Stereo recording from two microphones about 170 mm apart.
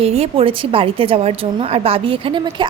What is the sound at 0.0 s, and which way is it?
A woman's voice, 35° right (ahead or behind).